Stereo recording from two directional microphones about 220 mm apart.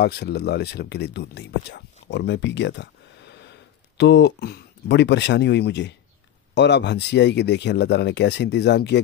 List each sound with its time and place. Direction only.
0.0 s speech: 50° left (ahead or behind)